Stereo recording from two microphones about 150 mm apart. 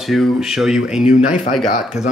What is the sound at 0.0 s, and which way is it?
Speech, centre (ahead or behind).